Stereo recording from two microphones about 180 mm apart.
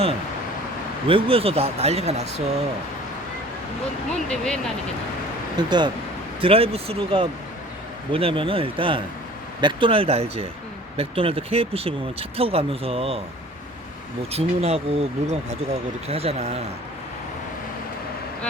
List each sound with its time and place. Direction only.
1.0 s speech: 30° right (ahead or behind)
4.3 s speech: 5° left (ahead or behind)
5.5 s speech: 25° right (ahead or behind)
14.3 s speech: 35° right (ahead or behind)